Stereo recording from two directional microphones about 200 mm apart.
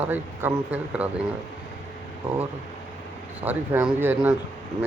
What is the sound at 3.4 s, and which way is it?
Speech, 10° right (ahead or behind).